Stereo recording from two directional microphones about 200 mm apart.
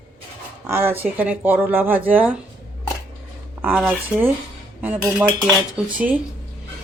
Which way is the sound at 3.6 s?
5° right (ahead or behind).